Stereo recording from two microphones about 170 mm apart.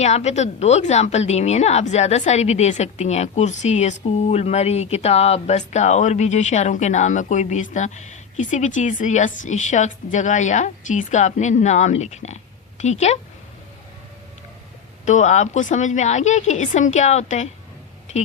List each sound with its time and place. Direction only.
0.0 s a woman's voice: 40° left (ahead or behind)
15.0 s speech: 45° left (ahead or behind)